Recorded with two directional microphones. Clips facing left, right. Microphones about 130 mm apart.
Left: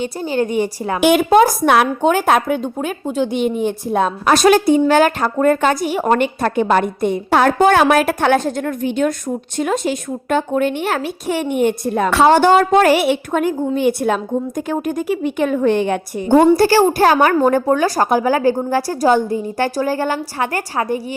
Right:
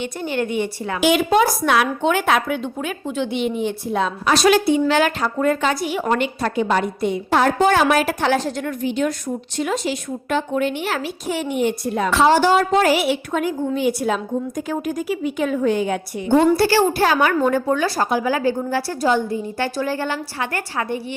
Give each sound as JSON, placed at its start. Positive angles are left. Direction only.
{"t": 0.0, "sound": "a woman's voice", "side_deg": 35}
{"t": 0.9, "sound": "a woman's voice", "side_deg": 50}